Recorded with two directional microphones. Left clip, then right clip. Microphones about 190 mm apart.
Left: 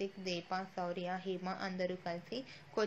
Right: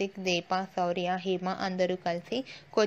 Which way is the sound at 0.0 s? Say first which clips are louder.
Right 10 dB; 40° right (ahead or behind).